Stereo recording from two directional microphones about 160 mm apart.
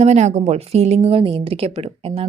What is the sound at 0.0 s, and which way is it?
A woman's voice, 45° right (ahead or behind).